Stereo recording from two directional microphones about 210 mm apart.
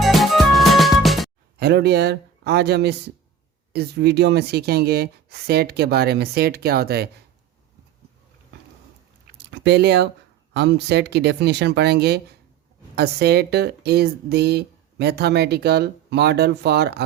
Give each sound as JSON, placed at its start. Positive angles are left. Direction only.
{"t": 0.0, "sound": "music", "side_deg": 0}
{"t": 1.5, "sound": "speech", "side_deg": -50}
{"t": 9.2, "sound": "a sound", "side_deg": -55}
{"t": 10.5, "sound": "speech", "side_deg": -55}